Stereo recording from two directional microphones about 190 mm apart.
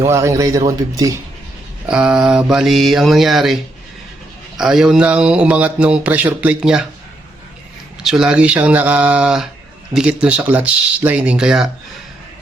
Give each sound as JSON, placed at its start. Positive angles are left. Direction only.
{"t": 0.0, "sound": "speech", "side_deg": -15}
{"t": 1.9, "sound": "mantra", "side_deg": -5}
{"t": 8.0, "sound": "mantra", "side_deg": -5}
{"t": 9.9, "sound": "speech", "side_deg": -5}